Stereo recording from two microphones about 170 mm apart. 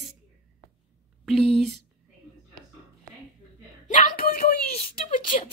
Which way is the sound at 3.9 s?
45° left (ahead or behind).